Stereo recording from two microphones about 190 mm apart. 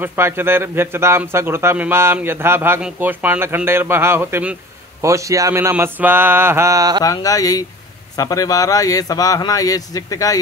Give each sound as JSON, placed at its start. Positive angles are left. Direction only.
{"t": 0.0, "sound": "a man's voice", "side_deg": -10}
{"t": 7.0, "sound": "speech", "side_deg": 20}